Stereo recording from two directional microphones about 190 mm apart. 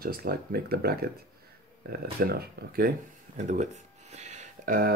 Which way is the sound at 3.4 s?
40° right (ahead or behind).